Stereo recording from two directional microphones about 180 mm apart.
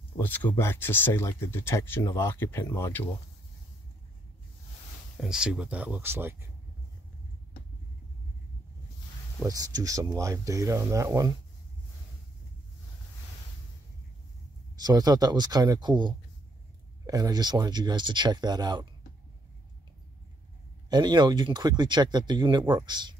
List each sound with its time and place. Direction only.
0.2 s speech: 10° left (ahead or behind)
5.2 s speech: 5° right (ahead or behind)
9.4 s speech: 20° right (ahead or behind)
14.8 s speech: 20° right (ahead or behind)
20.9 s speech: 25° right (ahead or behind)